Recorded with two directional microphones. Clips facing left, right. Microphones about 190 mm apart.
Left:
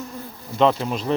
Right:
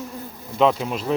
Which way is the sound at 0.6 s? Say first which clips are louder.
Even; 5° right (ahead or behind).